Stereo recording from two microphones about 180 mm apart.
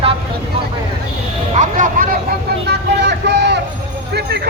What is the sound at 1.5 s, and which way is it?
Speech, 45° right (ahead or behind).